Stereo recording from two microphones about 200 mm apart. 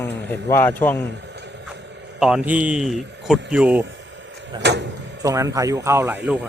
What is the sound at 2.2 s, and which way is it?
Speech, 5° right (ahead or behind).